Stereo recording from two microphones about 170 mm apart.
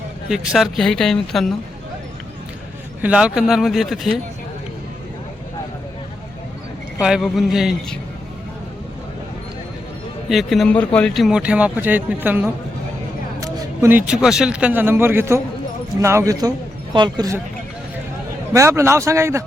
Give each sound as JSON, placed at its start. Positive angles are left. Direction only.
{"t": 0.3, "sound": "speech", "side_deg": 0}
{"t": 3.0, "sound": "speech", "side_deg": -5}
{"t": 7.0, "sound": "speech", "side_deg": 0}
{"t": 10.2, "sound": "speech", "side_deg": 0}
{"t": 18.5, "sound": "a man's voice", "side_deg": -15}